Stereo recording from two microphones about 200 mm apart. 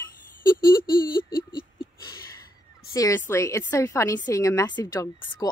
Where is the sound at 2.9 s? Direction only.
15° left (ahead or behind).